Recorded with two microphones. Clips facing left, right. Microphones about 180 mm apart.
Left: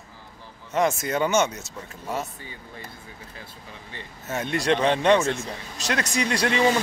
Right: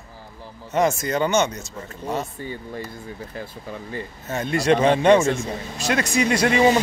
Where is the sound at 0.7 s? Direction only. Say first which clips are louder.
Right 2 dB; centre (ahead or behind).